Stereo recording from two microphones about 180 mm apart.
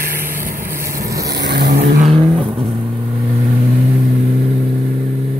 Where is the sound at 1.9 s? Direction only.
30° right (ahead or behind).